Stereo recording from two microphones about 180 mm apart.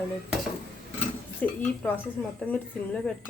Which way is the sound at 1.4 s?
10° left (ahead or behind).